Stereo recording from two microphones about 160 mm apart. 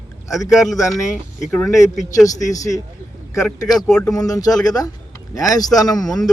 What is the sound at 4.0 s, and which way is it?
Speech, 20° left (ahead or behind).